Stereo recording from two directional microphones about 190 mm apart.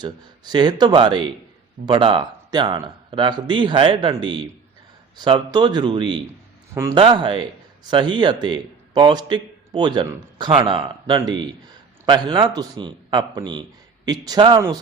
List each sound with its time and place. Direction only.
0.0 s a man's voice: 20° right (ahead or behind)